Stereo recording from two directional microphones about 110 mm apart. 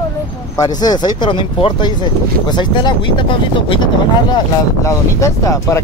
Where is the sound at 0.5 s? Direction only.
35° left (ahead or behind).